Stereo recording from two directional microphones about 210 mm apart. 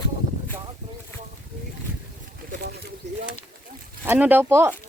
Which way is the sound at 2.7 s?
50° right (ahead or behind).